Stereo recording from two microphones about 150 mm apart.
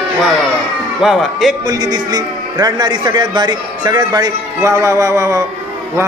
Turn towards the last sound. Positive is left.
turn(degrees=-20)  # may be behind; listen again after turning